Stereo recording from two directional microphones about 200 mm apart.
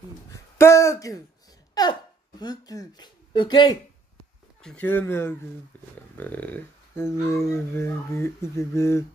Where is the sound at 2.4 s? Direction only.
20° left (ahead or behind).